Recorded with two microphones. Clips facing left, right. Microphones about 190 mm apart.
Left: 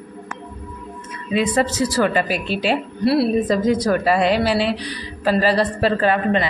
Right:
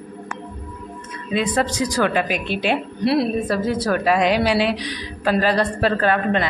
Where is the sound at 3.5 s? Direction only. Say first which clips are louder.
Left 4 dB; 15° left (ahead or behind).